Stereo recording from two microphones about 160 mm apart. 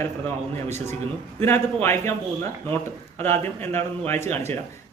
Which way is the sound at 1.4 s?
15° left (ahead or behind).